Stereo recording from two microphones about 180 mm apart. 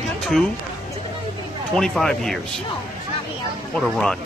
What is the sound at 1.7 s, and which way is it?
Speech, centre (ahead or behind).